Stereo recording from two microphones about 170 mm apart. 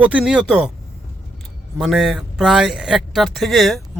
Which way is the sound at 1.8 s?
Centre (ahead or behind).